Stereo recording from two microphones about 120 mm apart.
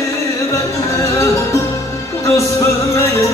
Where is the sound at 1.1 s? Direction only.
25° left (ahead or behind).